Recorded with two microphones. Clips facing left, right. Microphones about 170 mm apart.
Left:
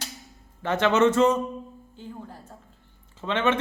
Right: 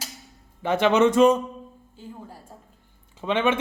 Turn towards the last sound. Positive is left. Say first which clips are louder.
# right 2 dB
turn(degrees=-15)  # may be behind; listen again after turning